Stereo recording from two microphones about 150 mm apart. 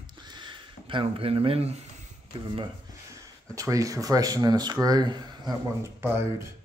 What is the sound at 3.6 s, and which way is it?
Speech, 20° right (ahead or behind).